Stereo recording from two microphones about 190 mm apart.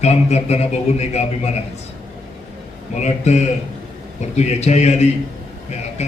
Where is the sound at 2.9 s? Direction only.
35° left (ahead or behind).